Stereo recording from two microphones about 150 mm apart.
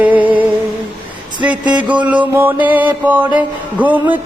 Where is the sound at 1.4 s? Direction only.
10° right (ahead or behind).